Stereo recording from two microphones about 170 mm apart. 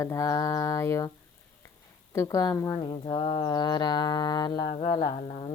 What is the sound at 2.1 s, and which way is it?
Mantra, 20° left (ahead or behind).